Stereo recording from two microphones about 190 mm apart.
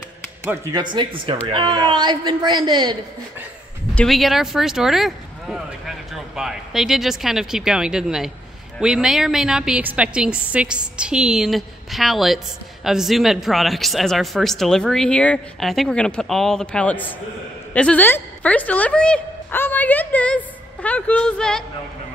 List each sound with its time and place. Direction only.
0.5 s a woman's voice: 20° right (ahead or behind)
3.9 s a woman's voice: centre (ahead or behind)